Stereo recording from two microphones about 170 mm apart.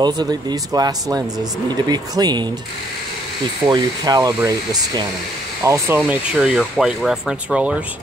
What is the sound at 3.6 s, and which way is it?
Speech, 25° right (ahead or behind).